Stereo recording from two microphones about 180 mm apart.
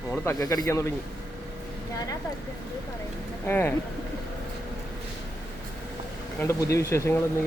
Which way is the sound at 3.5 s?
10° left (ahead or behind).